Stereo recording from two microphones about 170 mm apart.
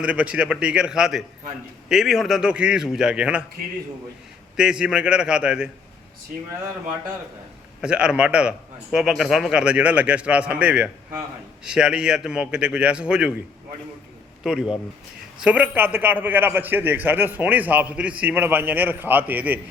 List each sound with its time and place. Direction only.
0.0 s a man's voice: 5° right (ahead or behind)
4.5 s a man's voice: 5° right (ahead or behind)
7.8 s a man's voice: 5° right (ahead or behind)
14.4 s a man's voice: 5° right (ahead or behind)